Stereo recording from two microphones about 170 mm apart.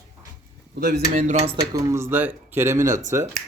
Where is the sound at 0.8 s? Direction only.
60° right (ahead or behind).